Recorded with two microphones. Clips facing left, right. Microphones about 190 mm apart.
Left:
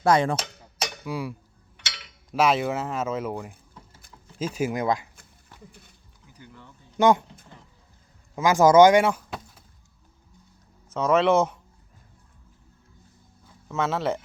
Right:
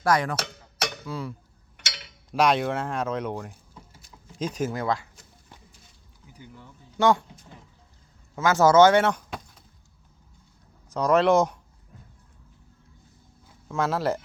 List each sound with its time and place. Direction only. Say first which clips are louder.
0.0 s a sound: left 3 dB; 25° left (ahead or behind)
0.3 s cowbell: right 1 dB; 55° right (ahead or behind)
1.0 s speech: left 3 dB; 10° left (ahead or behind)
6.3 s speech: right 1 dB; 15° right (ahead or behind)
6.9 s a sound: left 2 dB; 20° left (ahead or behind)
8.4 s speech: left 2 dB; 15° left (ahead or behind)
10.9 s speech: even; centre (ahead or behind)
13.7 s speech: even; centre (ahead or behind)